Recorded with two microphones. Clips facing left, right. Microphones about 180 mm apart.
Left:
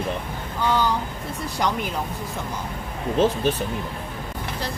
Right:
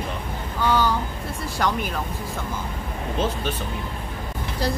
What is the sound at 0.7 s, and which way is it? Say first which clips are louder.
Speech: right 1 dB; 20° left (ahead or behind).